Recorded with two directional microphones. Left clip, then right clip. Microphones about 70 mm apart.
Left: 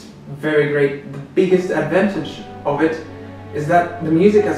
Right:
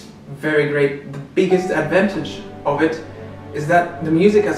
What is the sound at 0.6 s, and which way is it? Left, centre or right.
Speech, centre.